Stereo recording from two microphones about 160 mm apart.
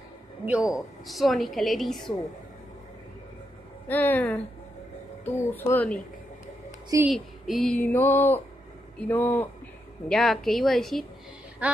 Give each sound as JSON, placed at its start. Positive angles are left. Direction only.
{"t": 0.5, "sound": "a woman's voice", "side_deg": -5}
{"t": 3.9, "sound": "speech", "side_deg": 10}
{"t": 7.1, "sound": "speech", "side_deg": 0}
{"t": 10.0, "sound": "a woman's voice", "side_deg": 0}